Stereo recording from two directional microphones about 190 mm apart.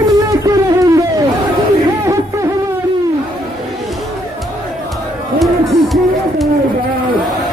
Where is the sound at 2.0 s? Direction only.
15° right (ahead or behind).